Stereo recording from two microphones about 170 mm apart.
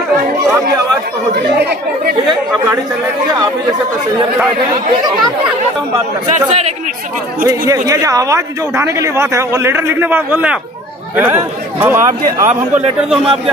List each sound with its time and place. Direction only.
6.3 s speech: 40° right (ahead or behind)
7.4 s speech: 20° right (ahead or behind)